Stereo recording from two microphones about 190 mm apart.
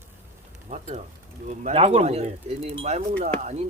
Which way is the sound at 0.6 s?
40° right (ahead or behind).